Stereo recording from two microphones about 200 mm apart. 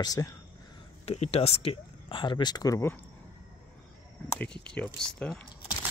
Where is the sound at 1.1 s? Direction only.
30° left (ahead or behind); by 3.0 s 15° left (ahead or behind).